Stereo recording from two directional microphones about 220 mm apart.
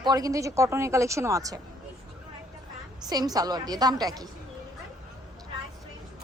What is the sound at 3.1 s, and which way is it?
A woman's voice, 15° right (ahead or behind).